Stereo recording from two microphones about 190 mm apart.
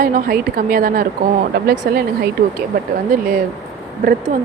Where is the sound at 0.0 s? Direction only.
50° right (ahead or behind).